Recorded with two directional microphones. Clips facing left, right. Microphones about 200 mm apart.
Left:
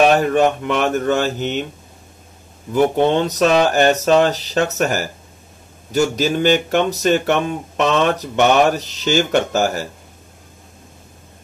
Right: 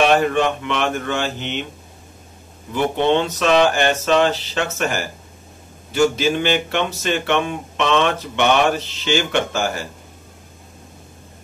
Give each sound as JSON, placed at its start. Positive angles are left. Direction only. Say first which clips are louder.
{"t": 0.0, "sound": "speech", "louder": "left 3 dB", "side_deg": 40}
{"t": 2.7, "sound": "speech", "louder": "left 3 dB", "side_deg": 40}